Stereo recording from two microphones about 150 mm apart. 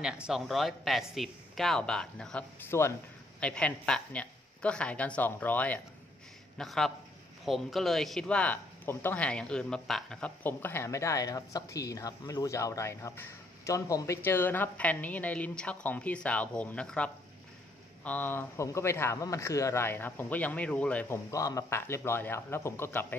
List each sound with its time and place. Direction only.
0.0 s a man's voice: 5° right (ahead or behind)
21.3 s a man's voice: 20° left (ahead or behind)